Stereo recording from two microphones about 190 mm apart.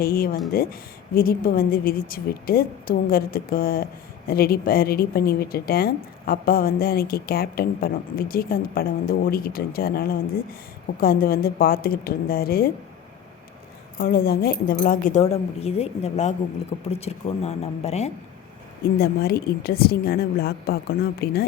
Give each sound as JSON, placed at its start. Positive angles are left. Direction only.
{"t": 0.0, "sound": "a woman's voice", "side_deg": 50}
{"t": 14.0, "sound": "speech", "side_deg": 50}
{"t": 18.9, "sound": "a woman's voice", "side_deg": 55}